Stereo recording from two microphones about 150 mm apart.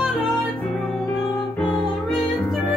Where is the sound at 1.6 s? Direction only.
30° left (ahead or behind).